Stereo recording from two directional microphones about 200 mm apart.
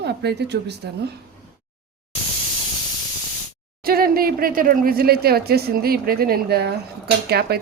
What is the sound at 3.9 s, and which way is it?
Speech, 50° right (ahead or behind).